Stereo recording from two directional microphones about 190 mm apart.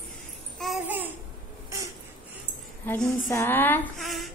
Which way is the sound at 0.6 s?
5° right (ahead or behind).